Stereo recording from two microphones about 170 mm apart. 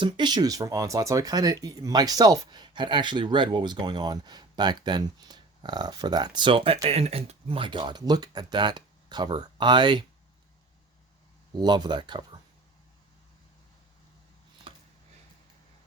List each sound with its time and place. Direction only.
0.0 s speech: 25° right (ahead or behind)
11.5 s speech: 25° right (ahead or behind)
14.7 s a sound: 30° right (ahead or behind)